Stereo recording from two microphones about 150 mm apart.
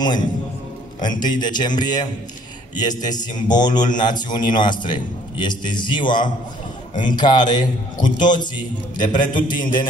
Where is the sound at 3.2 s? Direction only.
30° left (ahead or behind).